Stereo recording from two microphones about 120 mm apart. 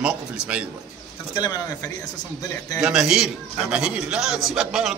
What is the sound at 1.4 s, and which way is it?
Speech, 30° left (ahead or behind).